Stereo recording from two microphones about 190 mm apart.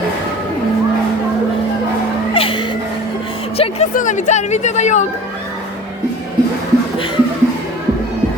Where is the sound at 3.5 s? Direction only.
30° left (ahead or behind).